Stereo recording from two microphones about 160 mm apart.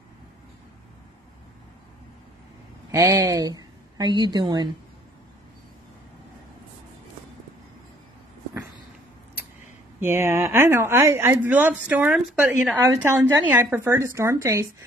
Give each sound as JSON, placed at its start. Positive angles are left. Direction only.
{"t": 2.9, "sound": "a woman's voice", "side_deg": -20}
{"t": 9.9, "sound": "speech", "side_deg": -15}